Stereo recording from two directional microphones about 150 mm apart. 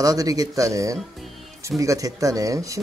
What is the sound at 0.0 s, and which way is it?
Speech, 25° right (ahead or behind).